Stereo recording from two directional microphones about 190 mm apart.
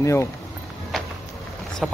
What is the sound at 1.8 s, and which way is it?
Speech, centre (ahead or behind).